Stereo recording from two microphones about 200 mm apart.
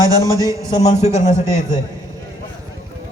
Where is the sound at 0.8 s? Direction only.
35° left (ahead or behind).